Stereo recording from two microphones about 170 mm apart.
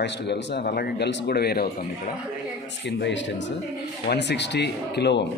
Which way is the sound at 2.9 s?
90° left.